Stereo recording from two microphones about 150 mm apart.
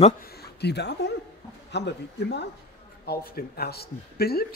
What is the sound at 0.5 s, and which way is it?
Speech, 90° left.